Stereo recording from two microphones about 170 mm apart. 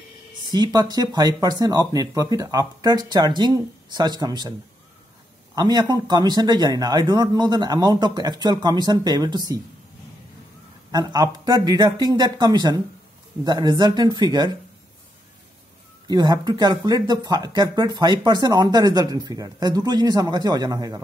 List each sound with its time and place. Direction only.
0.5 s speech: 25° right (ahead or behind)
10.9 s speech: 25° right (ahead or behind)
16.1 s speech: 25° right (ahead or behind)